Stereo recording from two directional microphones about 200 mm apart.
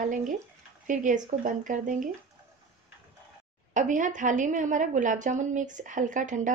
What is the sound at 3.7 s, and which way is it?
A woman's voice, 40° right (ahead or behind).